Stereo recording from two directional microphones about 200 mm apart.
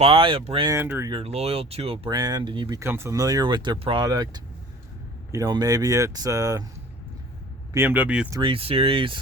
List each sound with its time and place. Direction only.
0.0 s speech: 25° right (ahead or behind)
0.8 s speech: 10° right (ahead or behind)
1.1 s speech: 30° right (ahead or behind)
7.7 s speech: 10° right (ahead or behind)
8.3 s speech: 25° right (ahead or behind)